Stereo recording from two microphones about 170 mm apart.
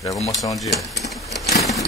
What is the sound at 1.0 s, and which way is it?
Sewing machine, centre (ahead or behind).